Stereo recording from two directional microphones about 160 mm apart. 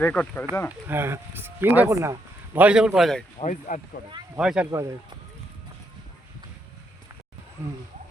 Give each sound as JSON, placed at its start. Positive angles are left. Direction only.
{"t": 0.0, "sound": "speech", "side_deg": 10}
{"t": 0.7, "sound": "speech", "side_deg": -15}
{"t": 2.6, "sound": "a man's voice", "side_deg": -5}
{"t": 3.4, "sound": "speech", "side_deg": 55}
{"t": 4.0, "sound": "speech", "side_deg": 65}
{"t": 4.4, "sound": "a man's voice", "side_deg": -5}
{"t": 4.7, "sound": "speech", "side_deg": -20}